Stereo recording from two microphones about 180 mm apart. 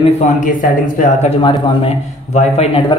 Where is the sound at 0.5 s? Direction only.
45° left (ahead or behind).